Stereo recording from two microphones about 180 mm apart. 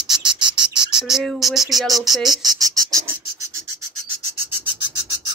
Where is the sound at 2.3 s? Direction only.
20° right (ahead or behind).